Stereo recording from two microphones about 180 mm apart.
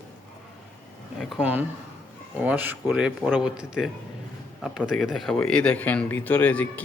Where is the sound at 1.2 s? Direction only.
5° right (ahead or behind).